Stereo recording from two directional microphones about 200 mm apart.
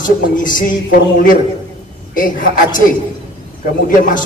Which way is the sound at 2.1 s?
45° left (ahead or behind).